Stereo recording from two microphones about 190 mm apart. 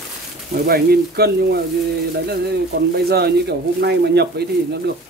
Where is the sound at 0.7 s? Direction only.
55° right (ahead or behind).